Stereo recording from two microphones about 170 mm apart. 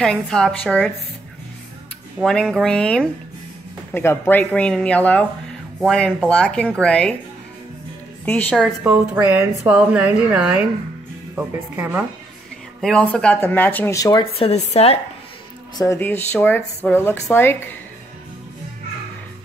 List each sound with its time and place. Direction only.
0.0 s speech: 5° left (ahead or behind)
2.1 s speech: centre (ahead or behind)
8.3 s speech: 10° left (ahead or behind)
8.8 s a woman's voice: 10° right (ahead or behind)
12.8 s speech: 5° left (ahead or behind)
14.3 s speech: 35° left (ahead or behind)
15.8 s speech: 15° left (ahead or behind)